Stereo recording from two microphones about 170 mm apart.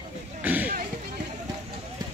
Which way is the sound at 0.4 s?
10° right (ahead or behind).